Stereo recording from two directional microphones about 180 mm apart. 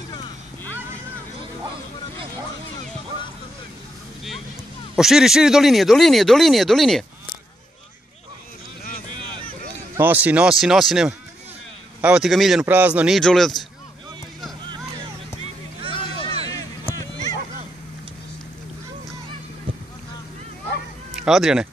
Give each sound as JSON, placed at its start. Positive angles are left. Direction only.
{"t": 4.9, "sound": "speech", "side_deg": 0}
{"t": 9.9, "sound": "speech", "side_deg": -10}
{"t": 15.9, "sound": "a sound", "side_deg": 30}
{"t": 21.1, "sound": "speech", "side_deg": -5}